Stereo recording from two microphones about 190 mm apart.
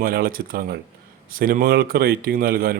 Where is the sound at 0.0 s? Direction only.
50° right (ahead or behind).